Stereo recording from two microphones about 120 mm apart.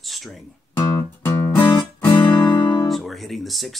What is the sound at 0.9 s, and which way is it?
Music, 15° left (ahead or behind).